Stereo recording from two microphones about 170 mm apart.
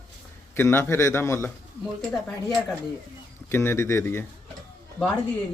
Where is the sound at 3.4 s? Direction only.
15° left (ahead or behind).